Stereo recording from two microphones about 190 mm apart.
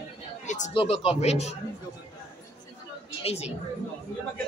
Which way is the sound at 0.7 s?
30° left (ahead or behind).